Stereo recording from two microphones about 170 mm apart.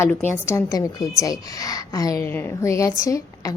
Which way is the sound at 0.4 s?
20° left (ahead or behind).